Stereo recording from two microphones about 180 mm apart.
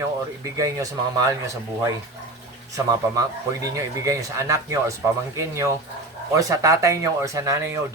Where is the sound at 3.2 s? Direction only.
20° right (ahead or behind).